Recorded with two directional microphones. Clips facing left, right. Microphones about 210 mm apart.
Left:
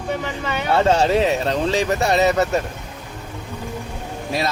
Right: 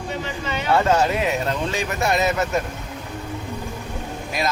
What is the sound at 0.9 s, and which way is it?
A man's voice, 30° left (ahead or behind).